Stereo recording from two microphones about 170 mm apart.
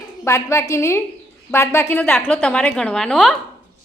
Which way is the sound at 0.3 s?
15° left (ahead or behind).